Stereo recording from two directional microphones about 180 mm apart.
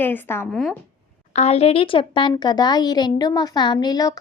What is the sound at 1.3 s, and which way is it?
A woman's voice, 35° left (ahead or behind).